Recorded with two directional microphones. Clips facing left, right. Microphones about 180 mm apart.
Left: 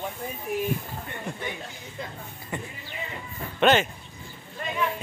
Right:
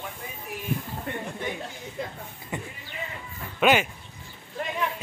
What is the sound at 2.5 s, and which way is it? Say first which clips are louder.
Basketball bounce: even; 20° right (ahead or behind).